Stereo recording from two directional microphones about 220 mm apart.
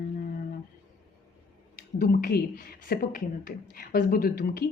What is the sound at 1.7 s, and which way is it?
A woman's voice, 40° left (ahead or behind).